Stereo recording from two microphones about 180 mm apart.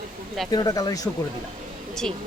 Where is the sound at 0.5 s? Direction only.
20° left (ahead or behind).